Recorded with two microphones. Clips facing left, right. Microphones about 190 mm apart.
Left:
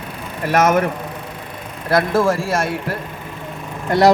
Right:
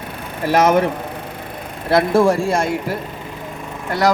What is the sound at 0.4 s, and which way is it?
Speech, 30° right (ahead or behind).